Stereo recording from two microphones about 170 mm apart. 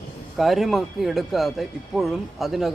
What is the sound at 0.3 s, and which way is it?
A man's voice, centre (ahead or behind).